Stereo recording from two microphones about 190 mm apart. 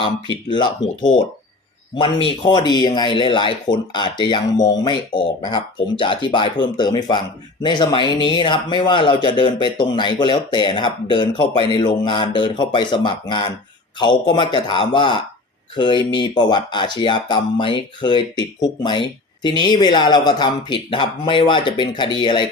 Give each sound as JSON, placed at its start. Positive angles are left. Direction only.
{"t": 0.4, "sound": "speech", "side_deg": 25}
{"t": 2.0, "sound": "speech", "side_deg": 25}